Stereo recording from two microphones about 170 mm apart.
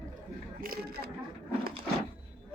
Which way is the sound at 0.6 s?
65° right (ahead or behind).